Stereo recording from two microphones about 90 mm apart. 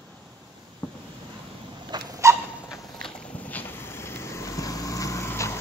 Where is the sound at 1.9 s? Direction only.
50° right (ahead or behind).